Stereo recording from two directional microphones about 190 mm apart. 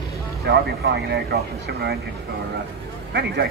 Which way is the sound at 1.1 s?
60° right (ahead or behind).